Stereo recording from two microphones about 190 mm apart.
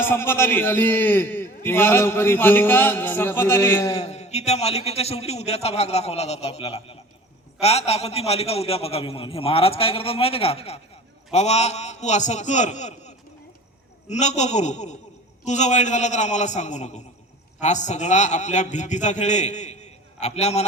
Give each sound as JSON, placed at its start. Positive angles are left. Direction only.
{"t": 0.0, "sound": "a man's voice", "side_deg": 10}
{"t": 4.0, "sound": "a man's voice", "side_deg": 35}